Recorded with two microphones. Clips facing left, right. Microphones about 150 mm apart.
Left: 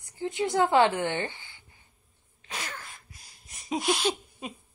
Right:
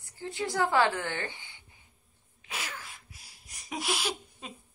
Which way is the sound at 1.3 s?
20° right (ahead or behind).